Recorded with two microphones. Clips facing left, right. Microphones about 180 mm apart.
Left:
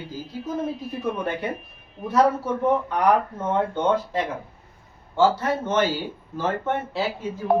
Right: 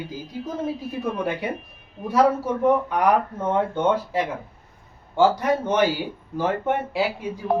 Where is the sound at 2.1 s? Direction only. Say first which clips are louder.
Right 1 dB; 10° right (ahead or behind).